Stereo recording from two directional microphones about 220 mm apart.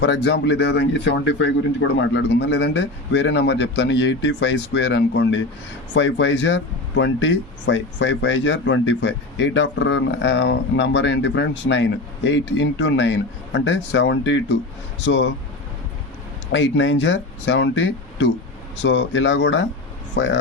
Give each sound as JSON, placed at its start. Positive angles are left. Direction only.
{"t": 0.0, "sound": "speech", "side_deg": 50}
{"t": 16.5, "sound": "speech", "side_deg": 55}